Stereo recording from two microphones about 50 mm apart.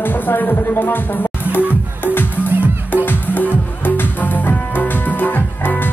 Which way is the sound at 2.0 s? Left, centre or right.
Left.